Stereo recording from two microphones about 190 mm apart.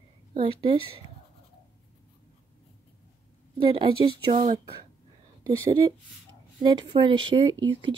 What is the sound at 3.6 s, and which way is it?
Speech, 25° right (ahead or behind).